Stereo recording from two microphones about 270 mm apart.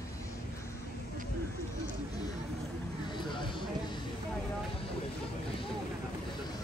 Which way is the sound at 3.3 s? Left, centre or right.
Centre.